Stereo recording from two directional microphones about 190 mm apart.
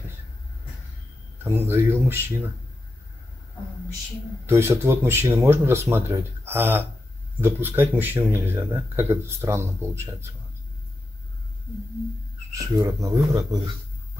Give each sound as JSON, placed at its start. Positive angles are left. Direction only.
{"t": 1.4, "sound": "speech", "side_deg": -15}
{"t": 4.5, "sound": "speech", "side_deg": -15}
{"t": 12.7, "sound": "speech", "side_deg": -20}